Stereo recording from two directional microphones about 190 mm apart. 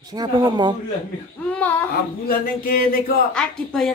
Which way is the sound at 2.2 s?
50° left (ahead or behind).